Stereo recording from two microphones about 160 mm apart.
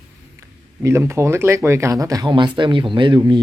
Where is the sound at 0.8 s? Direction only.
15° right (ahead or behind).